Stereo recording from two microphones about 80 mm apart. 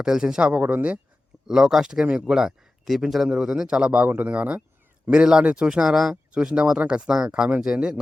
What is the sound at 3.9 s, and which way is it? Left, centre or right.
Speech, right.